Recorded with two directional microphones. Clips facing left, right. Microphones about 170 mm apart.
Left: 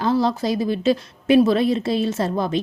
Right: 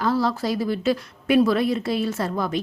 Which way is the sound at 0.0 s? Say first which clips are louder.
Left 3 dB; 20° left (ahead or behind).